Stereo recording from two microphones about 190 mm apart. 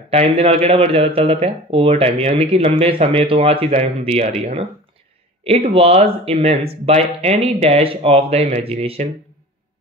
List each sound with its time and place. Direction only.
0.1 s speech: 30° right (ahead or behind)